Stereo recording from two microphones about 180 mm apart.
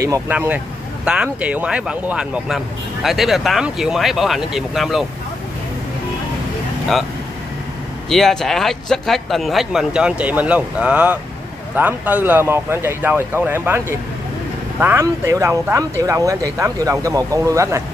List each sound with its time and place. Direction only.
0.0 s speech: 15° right (ahead or behind)
8.1 s speech: centre (ahead or behind); by 17.8 s 15° right (ahead or behind)